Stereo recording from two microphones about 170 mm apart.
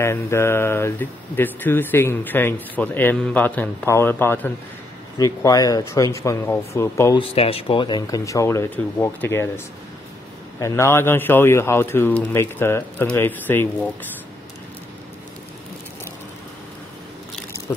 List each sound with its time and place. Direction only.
0.0 s speech: 15° left (ahead or behind)
7.2 s speech: 35° left (ahead or behind); by 9.5 s 15° left (ahead or behind)
10.6 s speech: 15° left (ahead or behind)